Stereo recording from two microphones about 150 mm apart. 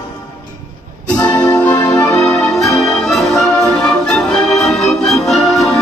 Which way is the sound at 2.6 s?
Centre (ahead or behind).